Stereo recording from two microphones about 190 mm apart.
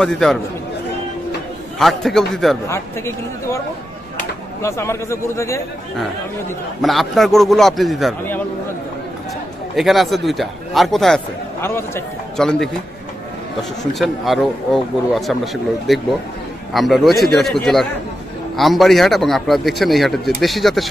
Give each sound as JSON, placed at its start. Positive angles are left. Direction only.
{"t": 0.0, "sound": "speech", "side_deg": 0}
{"t": 1.8, "sound": "speech", "side_deg": 0}
{"t": 2.7, "sound": "a man's voice", "side_deg": 15}
{"t": 6.8, "sound": "speech", "side_deg": 0}
{"t": 9.8, "sound": "speech", "side_deg": 0}
{"t": 11.6, "sound": "a man's voice", "side_deg": 10}